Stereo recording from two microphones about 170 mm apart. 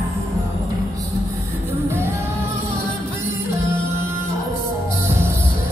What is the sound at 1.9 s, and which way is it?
Music, 15° right (ahead or behind).